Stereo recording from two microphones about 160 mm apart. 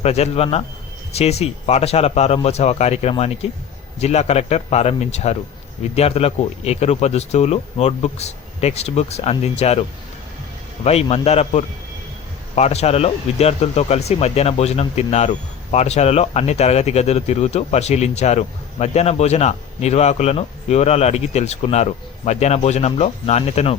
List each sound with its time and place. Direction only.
0.0 s speech: 40° left (ahead or behind)
10.8 s speech: 40° left (ahead or behind)